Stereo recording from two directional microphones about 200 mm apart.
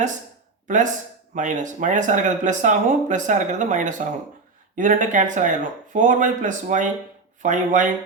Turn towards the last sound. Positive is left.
turn(degrees=-40)  # may be behind; listen again after turning